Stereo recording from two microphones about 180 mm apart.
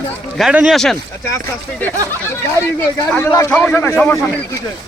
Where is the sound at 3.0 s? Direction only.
15° left (ahead or behind).